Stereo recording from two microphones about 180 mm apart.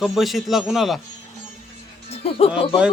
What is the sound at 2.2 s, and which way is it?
Speech, 30° left (ahead or behind).